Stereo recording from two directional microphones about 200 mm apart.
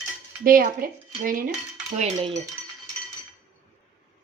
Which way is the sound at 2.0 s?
35° right (ahead or behind).